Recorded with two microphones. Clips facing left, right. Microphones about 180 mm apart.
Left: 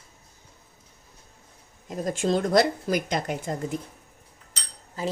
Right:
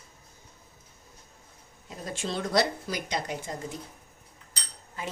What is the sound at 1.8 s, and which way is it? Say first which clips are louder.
Speech: left 9 dB; 45° left (ahead or behind).